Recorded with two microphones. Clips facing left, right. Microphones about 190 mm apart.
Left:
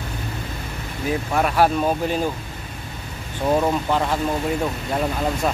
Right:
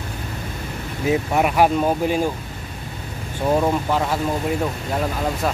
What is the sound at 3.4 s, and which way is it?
Speech, 5° right (ahead or behind).